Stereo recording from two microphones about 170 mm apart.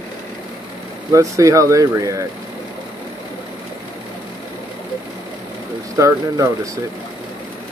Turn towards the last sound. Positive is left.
turn(degrees=-20)  # may be behind; listen again after turning